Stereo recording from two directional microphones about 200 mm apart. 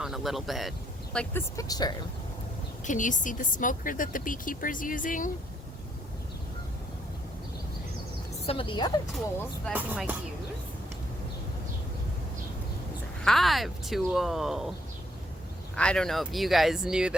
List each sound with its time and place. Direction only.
0.0 s speech: centre (ahead or behind); by 2.0 s 20° left (ahead or behind)
2.8 s speech: 40° left (ahead or behind)
8.4 s speech: 25° left (ahead or behind)
9.7 s speech: 10° right (ahead or behind)
13.2 s speech: centre (ahead or behind)
15.7 s speech: 5° left (ahead or behind)